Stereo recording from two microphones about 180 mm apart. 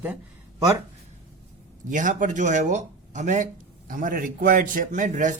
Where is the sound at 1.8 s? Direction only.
45° right (ahead or behind).